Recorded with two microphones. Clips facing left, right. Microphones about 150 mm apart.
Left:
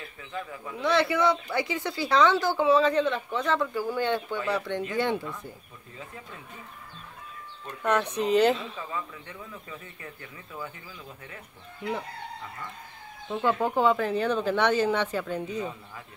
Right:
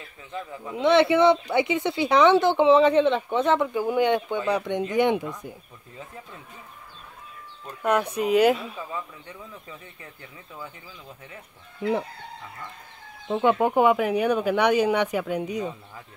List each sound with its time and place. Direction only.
0.3 s speech: 20° right (ahead or behind)
7.6 s speech: 10° right (ahead or behind)
13.3 s speech: 20° right (ahead or behind)